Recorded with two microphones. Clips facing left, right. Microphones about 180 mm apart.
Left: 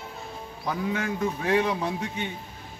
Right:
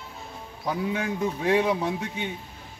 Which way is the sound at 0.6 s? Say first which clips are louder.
Right 1 dB; 15° right (ahead or behind).